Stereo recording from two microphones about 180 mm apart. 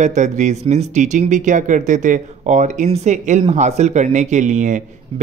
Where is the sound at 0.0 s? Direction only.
40° right (ahead or behind).